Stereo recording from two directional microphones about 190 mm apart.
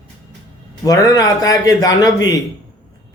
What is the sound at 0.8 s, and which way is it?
A man's voice, 20° left (ahead or behind).